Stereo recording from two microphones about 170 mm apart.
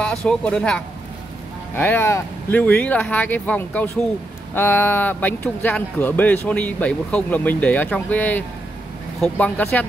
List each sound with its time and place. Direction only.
0.0 s speech: 5° left (ahead or behind)